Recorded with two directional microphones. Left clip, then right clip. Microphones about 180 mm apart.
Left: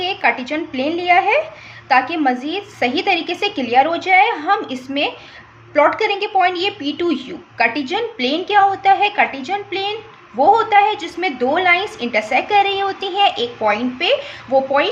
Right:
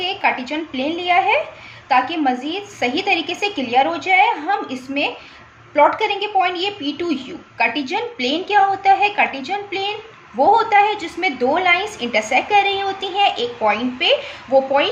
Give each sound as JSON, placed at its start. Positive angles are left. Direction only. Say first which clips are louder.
{"t": 0.0, "sound": "a woman's voice", "louder": "left 2 dB", "side_deg": 30}